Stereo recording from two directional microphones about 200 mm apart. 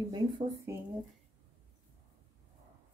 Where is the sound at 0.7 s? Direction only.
15° right (ahead or behind).